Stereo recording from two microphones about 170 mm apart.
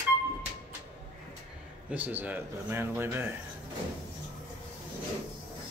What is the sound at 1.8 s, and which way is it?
Speech, 10° right (ahead or behind).